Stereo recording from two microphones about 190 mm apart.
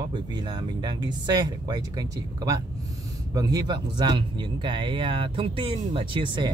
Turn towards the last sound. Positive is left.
turn(degrees=-25)  # may be behind; listen again after turning